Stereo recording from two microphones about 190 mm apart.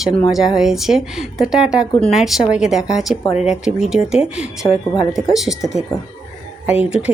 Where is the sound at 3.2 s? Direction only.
35° left (ahead or behind).